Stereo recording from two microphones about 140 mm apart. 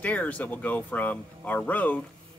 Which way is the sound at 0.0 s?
10° left (ahead or behind).